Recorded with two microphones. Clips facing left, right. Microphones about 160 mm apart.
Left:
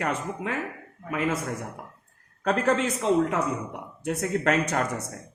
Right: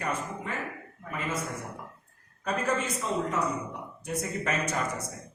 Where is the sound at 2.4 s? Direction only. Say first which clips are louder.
Left 6 dB; 70° left (ahead or behind).